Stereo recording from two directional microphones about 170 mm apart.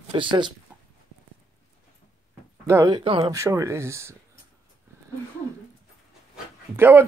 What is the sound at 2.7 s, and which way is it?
Speech, 15° right (ahead or behind).